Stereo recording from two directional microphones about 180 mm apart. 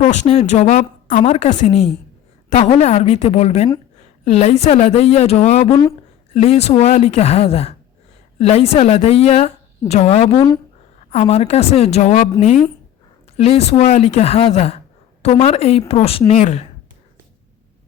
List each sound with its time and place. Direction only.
0.0 s a woman's voice: 40° left (ahead or behind)
10.3 s speech: 20° left (ahead or behind)
11.1 s a woman's voice: 35° left (ahead or behind)